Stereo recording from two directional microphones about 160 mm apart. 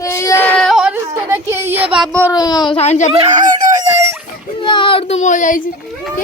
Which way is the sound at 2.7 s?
45° left (ahead or behind).